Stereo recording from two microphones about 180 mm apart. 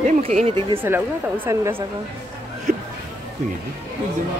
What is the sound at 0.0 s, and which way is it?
Speech, 40° right (ahead or behind).